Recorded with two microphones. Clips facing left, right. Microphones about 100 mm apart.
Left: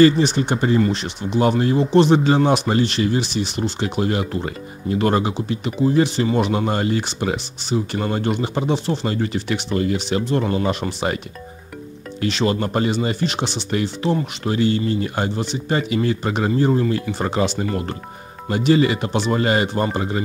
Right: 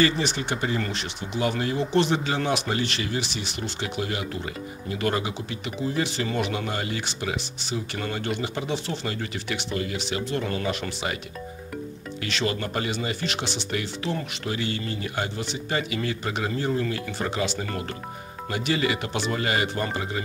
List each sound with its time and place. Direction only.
0.0 s speech: 35° left (ahead or behind)
0.7 s speech: 25° left (ahead or behind)
1.5 s speech: 35° left (ahead or behind)
6.1 s speech: 25° left (ahead or behind)
12.2 s speech: 30° left (ahead or behind)
18.5 s speech: 35° left (ahead or behind)